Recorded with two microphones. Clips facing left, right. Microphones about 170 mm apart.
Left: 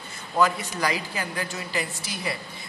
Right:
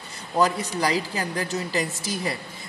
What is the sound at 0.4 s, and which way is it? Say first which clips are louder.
Speech: right 1 dB; 35° right (ahead or behind).